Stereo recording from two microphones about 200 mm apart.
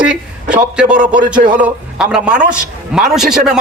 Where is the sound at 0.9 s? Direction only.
40° right (ahead or behind).